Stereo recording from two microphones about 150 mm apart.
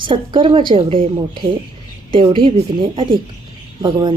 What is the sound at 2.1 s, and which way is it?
Speech, 35° right (ahead or behind).